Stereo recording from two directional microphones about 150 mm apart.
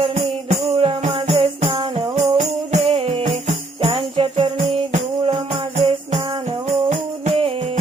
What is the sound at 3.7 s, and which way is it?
Jingle bell, 35° right (ahead or behind).